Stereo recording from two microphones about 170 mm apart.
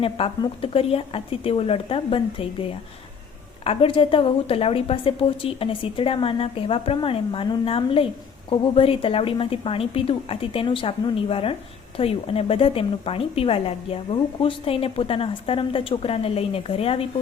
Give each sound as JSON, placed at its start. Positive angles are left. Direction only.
{"t": 0.0, "sound": "a woman's voice", "side_deg": 35}